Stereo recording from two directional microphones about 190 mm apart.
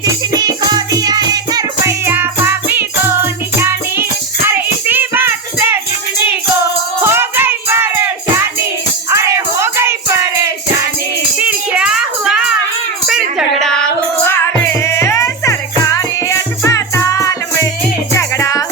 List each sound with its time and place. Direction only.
0.0 s music: 20° right (ahead or behind)
7.0 s music: 10° right (ahead or behind)
9.0 s music: 15° right (ahead or behind)
11.3 s music: 5° right (ahead or behind); by 18.6 s 15° left (ahead or behind)